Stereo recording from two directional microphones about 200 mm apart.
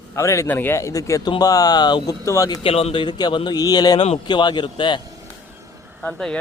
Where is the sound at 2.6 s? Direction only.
30° left (ahead or behind).